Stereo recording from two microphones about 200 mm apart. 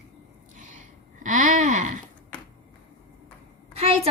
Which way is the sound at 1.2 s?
40° right (ahead or behind).